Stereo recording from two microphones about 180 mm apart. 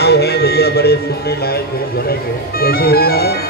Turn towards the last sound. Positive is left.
turn(degrees=60)  # may be behind; listen again after turning